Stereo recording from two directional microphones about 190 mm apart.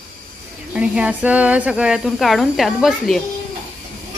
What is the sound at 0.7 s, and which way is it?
Speech, 5° right (ahead or behind).